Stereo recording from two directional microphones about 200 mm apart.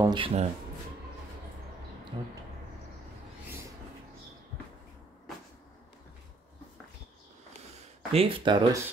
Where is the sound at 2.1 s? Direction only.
25° right (ahead or behind).